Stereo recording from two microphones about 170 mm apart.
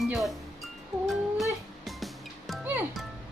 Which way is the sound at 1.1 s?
Centre (ahead or behind).